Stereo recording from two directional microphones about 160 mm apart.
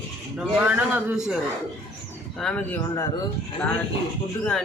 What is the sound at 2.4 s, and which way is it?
Speech, 5° left (ahead or behind).